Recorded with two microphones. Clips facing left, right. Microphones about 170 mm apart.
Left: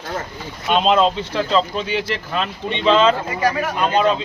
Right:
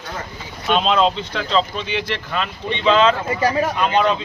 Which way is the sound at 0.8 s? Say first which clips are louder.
Left 2 dB; 5° left (ahead or behind).